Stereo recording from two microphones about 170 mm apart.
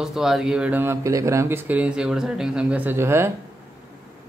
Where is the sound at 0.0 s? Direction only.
Centre (ahead or behind).